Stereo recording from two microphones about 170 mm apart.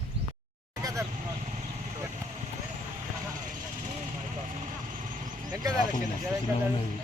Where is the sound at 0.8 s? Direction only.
20° right (ahead or behind).